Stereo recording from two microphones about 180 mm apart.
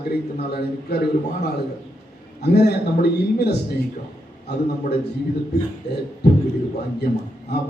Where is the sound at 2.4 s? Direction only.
60° left (ahead or behind).